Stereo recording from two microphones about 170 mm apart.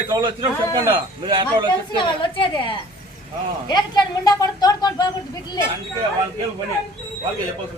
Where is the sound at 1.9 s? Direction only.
30° left (ahead or behind).